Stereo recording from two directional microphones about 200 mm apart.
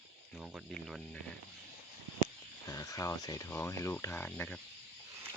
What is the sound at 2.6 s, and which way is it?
Speech, 15° left (ahead or behind).